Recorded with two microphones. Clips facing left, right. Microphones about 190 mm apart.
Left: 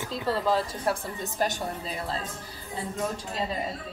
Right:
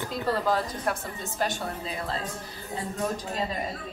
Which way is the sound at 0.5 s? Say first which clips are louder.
Left 1 dB; 30° left (ahead or behind).